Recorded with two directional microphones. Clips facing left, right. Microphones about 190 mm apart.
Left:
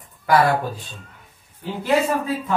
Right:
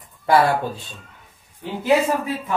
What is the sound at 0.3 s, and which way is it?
Speech, 25° right (ahead or behind).